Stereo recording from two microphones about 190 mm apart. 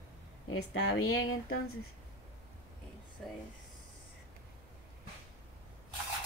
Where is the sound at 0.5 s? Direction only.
90° left.